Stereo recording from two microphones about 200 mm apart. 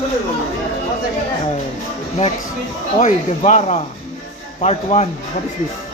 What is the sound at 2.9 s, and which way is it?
Speech, 35° left (ahead or behind).